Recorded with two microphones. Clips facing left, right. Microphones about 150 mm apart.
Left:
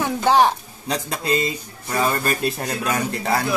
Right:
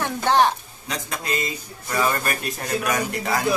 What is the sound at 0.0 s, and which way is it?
Speech, 10° left (ahead or behind).